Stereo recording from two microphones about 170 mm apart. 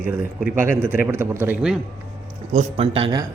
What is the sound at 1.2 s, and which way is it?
Speech, 10° right (ahead or behind).